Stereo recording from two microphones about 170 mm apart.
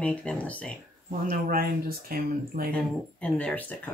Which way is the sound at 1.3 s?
55° right (ahead or behind).